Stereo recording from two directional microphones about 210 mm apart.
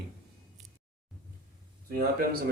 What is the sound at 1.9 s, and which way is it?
Speech, 45° right (ahead or behind).